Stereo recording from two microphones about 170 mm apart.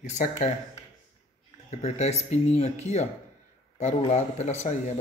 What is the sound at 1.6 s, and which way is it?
Speech, 40° left (ahead or behind).